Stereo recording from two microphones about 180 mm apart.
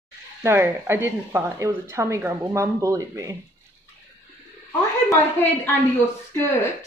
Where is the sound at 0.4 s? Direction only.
15° right (ahead or behind).